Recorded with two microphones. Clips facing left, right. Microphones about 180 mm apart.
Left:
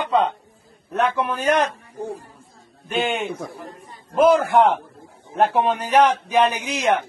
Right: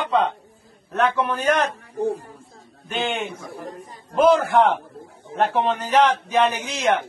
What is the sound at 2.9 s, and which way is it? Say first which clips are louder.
Speech: left 2 dB; 10° left (ahead or behind).